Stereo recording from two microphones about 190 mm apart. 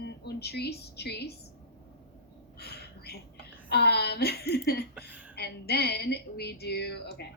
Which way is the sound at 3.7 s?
60° left (ahead or behind).